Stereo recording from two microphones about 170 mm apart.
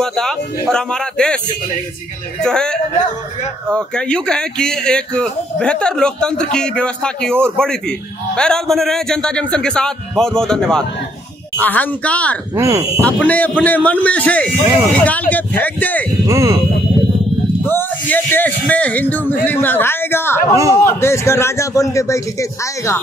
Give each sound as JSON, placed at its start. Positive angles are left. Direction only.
{"t": 0.0, "sound": "a man's voice", "side_deg": 5}
{"t": 2.4, "sound": "speech", "side_deg": 5}
{"t": 12.5, "sound": "speech", "side_deg": -15}
{"t": 13.0, "sound": "speech", "side_deg": 10}
{"t": 16.3, "sound": "speech", "side_deg": -15}
{"t": 17.6, "sound": "speech", "side_deg": 10}
{"t": 20.5, "sound": "speech", "side_deg": -20}
{"t": 20.8, "sound": "speech", "side_deg": 15}